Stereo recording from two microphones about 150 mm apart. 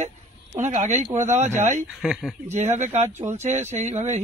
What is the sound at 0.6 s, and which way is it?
A man's voice, 50° right (ahead or behind).